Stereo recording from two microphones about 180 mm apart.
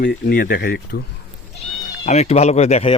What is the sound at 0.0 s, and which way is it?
Speech, 50° left (ahead or behind).